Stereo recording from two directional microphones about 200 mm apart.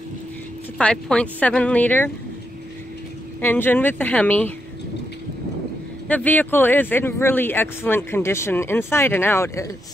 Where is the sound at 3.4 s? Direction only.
10° left (ahead or behind).